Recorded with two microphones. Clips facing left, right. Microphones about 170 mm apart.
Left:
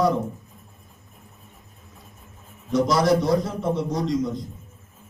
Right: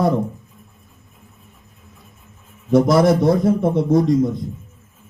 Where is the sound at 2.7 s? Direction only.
55° right (ahead or behind).